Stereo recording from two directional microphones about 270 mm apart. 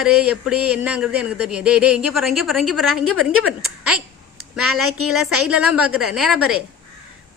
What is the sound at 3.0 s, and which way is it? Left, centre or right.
A woman's voice, right.